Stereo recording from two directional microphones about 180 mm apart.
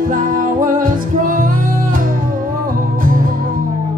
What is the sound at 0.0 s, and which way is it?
Music, 50° right (ahead or behind).